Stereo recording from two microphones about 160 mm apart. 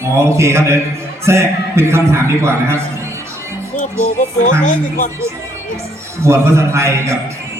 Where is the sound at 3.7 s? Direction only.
50° left (ahead or behind).